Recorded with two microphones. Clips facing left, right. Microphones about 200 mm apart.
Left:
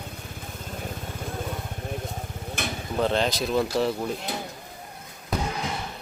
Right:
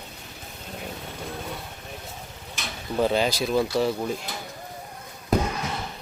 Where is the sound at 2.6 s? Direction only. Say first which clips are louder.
Left 6 dB; 55° left (ahead or behind).